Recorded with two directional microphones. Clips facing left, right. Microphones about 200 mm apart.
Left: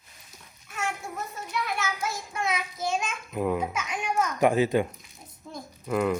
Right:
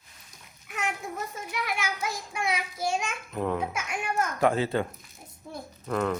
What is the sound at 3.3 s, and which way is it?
Speech, 10° left (ahead or behind).